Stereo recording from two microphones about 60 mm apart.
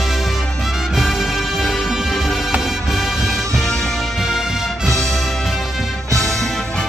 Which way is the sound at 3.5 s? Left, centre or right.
Centre.